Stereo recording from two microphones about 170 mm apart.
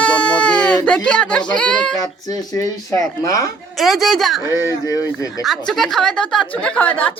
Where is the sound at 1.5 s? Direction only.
5° left (ahead or behind).